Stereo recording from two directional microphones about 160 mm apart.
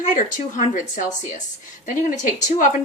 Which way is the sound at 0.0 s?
50° left (ahead or behind).